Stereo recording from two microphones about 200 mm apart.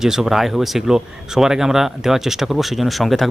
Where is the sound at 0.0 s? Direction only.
Centre (ahead or behind).